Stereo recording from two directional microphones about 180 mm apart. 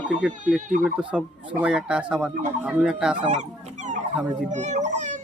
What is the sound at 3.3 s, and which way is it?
Fowl, 40° right (ahead or behind).